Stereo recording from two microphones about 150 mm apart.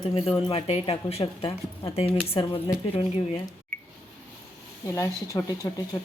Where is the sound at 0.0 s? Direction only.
40° left (ahead or behind).